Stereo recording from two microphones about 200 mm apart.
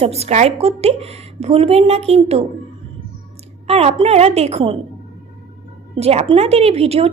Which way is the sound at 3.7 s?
30° right (ahead or behind).